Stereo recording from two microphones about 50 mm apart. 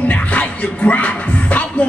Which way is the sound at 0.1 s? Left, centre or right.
Left.